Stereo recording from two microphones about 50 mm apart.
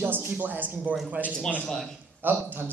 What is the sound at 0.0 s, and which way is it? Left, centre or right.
A woman's voice, right.